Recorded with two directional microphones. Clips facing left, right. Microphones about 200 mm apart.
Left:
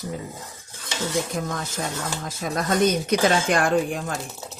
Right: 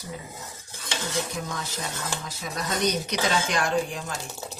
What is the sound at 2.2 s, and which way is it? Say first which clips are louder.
Speech: left 6 dB; 50° left (ahead or behind).